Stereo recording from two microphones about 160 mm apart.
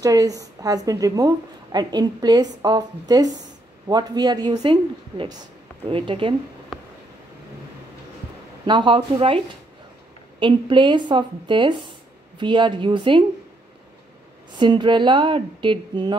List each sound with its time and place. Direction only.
0.0 s a woman's voice: 20° right (ahead or behind)
8.6 s speech: 30° right (ahead or behind)
10.4 s a woman's voice: 30° right (ahead or behind)
14.6 s a woman's voice: 30° right (ahead or behind)